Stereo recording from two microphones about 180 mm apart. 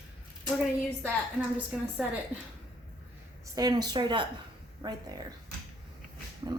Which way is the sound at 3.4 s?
20° right (ahead or behind).